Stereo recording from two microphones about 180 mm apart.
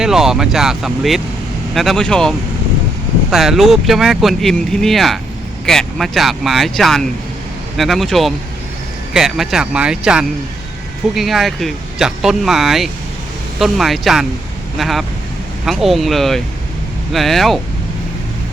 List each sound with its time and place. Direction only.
0.0 s speech: centre (ahead or behind)